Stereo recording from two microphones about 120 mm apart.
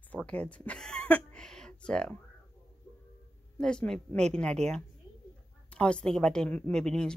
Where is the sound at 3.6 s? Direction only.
5° left (ahead or behind).